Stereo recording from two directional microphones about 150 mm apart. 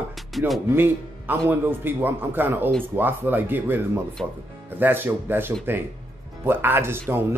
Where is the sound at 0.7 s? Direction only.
15° right (ahead or behind).